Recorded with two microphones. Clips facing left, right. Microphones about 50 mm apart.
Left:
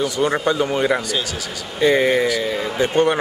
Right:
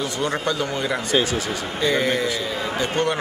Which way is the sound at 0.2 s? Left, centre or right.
Centre.